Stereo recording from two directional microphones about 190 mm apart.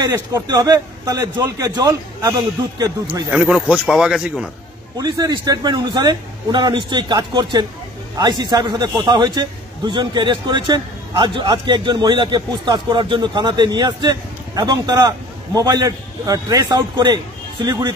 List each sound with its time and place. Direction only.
0.0 s a man's voice: 20° right (ahead or behind)
3.3 s speech: 5° right (ahead or behind)
4.9 s a man's voice: 20° right (ahead or behind)